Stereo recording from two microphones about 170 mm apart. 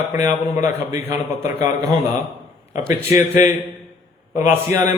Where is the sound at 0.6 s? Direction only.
15° right (ahead or behind).